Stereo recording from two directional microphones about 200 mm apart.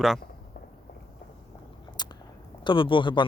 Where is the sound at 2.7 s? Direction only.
25° left (ahead or behind).